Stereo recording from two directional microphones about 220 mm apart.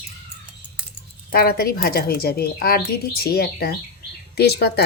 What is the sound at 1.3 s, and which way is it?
Speech, 45° left (ahead or behind).